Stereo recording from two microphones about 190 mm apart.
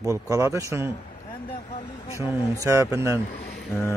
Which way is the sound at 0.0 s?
20° right (ahead or behind).